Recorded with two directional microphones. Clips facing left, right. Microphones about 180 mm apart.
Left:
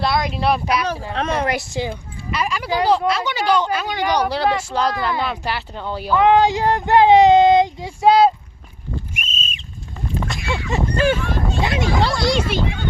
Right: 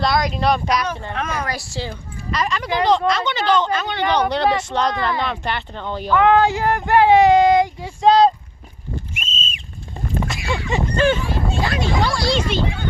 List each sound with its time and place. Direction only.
0.0 s speech: centre (ahead or behind)
1.1 s a woman's voice: 30° left (ahead or behind); by 8.3 s 10° left (ahead or behind)
9.2 s a sound: 25° right (ahead or behind)
10.2 s a sound: centre (ahead or behind)
11.6 s a woman's voice: 20° left (ahead or behind)
12.4 s a woman's voice: 10° left (ahead or behind)